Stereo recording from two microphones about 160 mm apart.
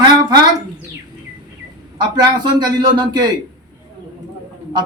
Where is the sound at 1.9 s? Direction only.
25° right (ahead or behind).